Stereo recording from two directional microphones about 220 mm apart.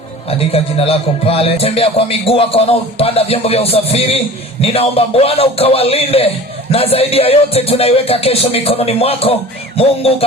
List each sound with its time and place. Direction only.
0.3 s a man's voice: 25° left (ahead or behind)